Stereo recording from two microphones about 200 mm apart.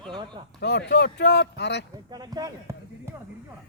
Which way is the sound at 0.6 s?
55° left (ahead or behind).